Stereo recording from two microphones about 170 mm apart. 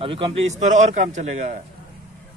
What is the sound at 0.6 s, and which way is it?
Speech, 45° right (ahead or behind).